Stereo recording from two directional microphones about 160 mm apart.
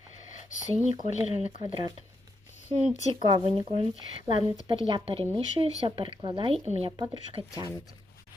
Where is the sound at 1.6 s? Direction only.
30° right (ahead or behind).